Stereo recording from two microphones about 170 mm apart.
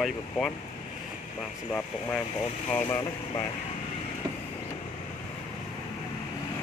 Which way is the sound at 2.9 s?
25° left (ahead or behind).